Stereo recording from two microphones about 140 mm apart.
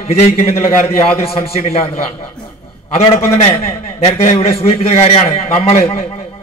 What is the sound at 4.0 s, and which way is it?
A man's voice, 50° left (ahead or behind).